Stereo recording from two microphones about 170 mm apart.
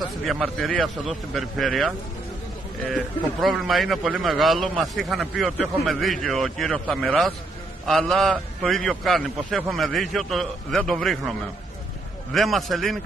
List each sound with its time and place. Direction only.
0.2 s a man's voice: centre (ahead or behind)